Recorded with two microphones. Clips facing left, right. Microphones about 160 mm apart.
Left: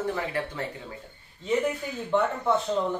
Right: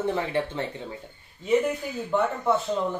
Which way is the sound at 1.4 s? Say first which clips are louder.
Right 3 dB; 5° right (ahead or behind).